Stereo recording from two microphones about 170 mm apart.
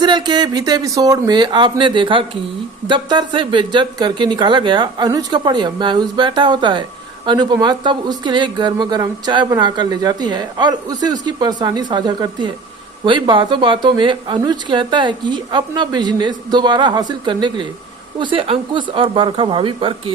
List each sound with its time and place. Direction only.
0.0 s speech: 25° right (ahead or behind)